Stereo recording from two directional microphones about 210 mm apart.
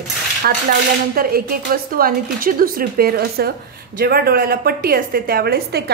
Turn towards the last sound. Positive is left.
turn(degrees=-50)  # may be behind; listen again after turning